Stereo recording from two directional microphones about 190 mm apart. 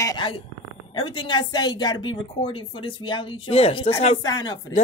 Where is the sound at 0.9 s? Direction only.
25° left (ahead or behind).